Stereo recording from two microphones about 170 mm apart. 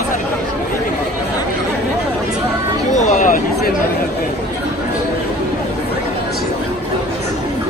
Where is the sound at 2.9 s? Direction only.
45° left (ahead or behind).